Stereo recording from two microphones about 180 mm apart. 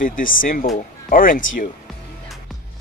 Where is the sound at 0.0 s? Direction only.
50° left (ahead or behind).